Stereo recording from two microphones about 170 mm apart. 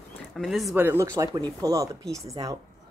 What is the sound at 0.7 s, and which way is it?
Speech, 15° right (ahead or behind).